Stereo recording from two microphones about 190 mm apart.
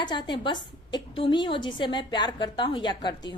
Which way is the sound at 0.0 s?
25° left (ahead or behind).